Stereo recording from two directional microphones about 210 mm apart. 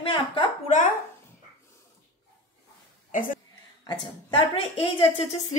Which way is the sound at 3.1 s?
40° left (ahead or behind).